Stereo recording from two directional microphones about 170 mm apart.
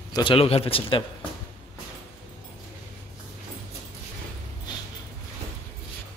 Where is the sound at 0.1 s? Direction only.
30° left (ahead or behind).